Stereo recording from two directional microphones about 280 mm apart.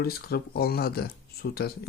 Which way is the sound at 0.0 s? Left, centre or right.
Left.